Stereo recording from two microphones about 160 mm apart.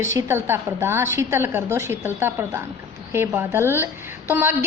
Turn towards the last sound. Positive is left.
turn(degrees=-10)  # may be behind; listen again after turning